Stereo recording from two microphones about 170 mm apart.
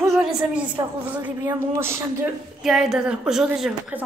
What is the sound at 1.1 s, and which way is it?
Speech, 15° right (ahead or behind).